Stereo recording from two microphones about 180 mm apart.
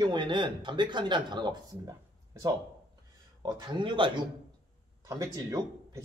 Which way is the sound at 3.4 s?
25° right (ahead or behind).